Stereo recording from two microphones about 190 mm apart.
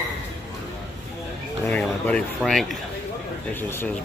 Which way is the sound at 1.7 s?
5° left (ahead or behind).